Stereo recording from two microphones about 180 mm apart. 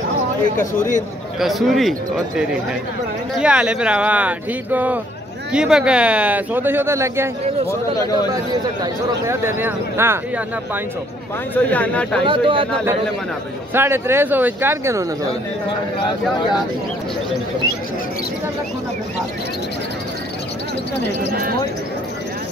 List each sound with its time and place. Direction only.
1.4 s speech: centre (ahead or behind)
8.8 s speech: 15° right (ahead or behind)
11.5 s speech: 10° left (ahead or behind)
12.3 s speech: 30° right (ahead or behind)
13.7 s speech: 15° right (ahead or behind)
16.0 s speech: 25° left (ahead or behind)
21.3 s speech: 55° right (ahead or behind)